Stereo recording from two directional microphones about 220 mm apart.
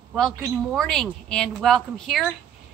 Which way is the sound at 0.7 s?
Centre (ahead or behind).